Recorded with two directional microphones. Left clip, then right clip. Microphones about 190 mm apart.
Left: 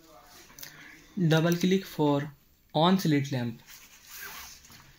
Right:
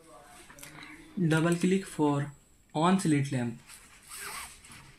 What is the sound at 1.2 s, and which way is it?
Speech, 45° left (ahead or behind).